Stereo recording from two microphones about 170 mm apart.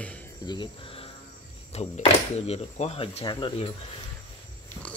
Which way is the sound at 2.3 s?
40° left (ahead or behind).